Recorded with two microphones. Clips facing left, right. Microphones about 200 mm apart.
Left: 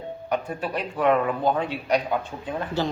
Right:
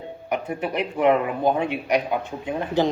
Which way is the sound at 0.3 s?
20° right (ahead or behind).